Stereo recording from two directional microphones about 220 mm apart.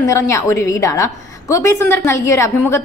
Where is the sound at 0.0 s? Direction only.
15° left (ahead or behind).